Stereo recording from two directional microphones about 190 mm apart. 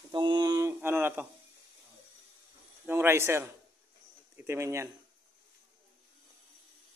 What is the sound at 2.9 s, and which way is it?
Speech, 10° right (ahead or behind).